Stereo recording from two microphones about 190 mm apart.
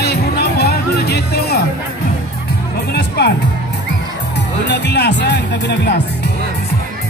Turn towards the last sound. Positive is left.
turn(degrees=60)  # may be behind; listen again after turning